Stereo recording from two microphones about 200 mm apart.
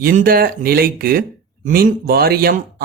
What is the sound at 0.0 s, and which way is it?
Speech, 45° right (ahead or behind).